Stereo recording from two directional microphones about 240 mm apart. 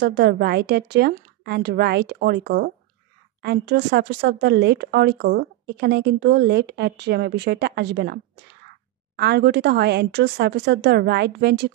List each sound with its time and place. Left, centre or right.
0.0 s speech: right